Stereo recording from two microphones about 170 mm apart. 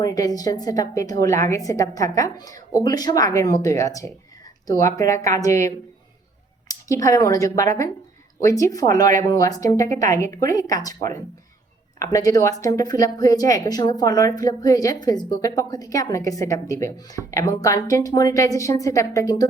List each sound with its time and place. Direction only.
0.0 s speech: 20° left (ahead or behind)
11.9 s speech: 20° left (ahead or behind)